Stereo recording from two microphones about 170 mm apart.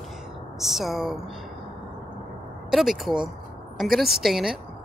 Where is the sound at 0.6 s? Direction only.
Centre (ahead or behind).